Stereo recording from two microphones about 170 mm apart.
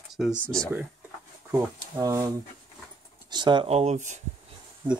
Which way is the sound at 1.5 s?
15° right (ahead or behind).